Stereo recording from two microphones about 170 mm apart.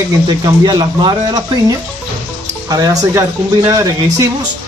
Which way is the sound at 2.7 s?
20° right (ahead or behind).